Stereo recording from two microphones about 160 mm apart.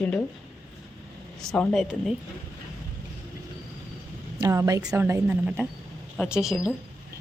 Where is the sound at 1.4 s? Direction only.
5° left (ahead or behind).